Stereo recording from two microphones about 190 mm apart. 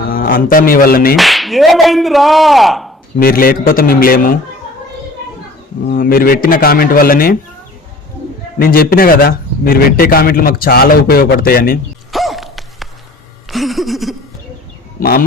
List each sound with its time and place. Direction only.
0.1 s a man's voice: 50° left (ahead or behind)
1.1 s speech: centre (ahead or behind)
3.2 s a man's voice: 50° left (ahead or behind)
5.9 s a man's voice: 50° left (ahead or behind)
8.5 s a man's voice: 50° left (ahead or behind)
12.1 s a sound: centre (ahead or behind)